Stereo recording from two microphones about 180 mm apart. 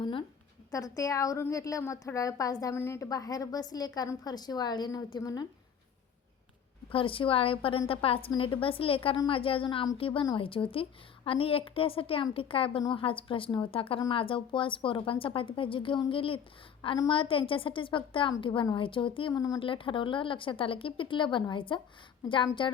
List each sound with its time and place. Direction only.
0.0 s a sound: 25° left (ahead or behind)
0.7 s a woman's voice: 20° left (ahead or behind)
6.9 s a woman's voice: 30° left (ahead or behind)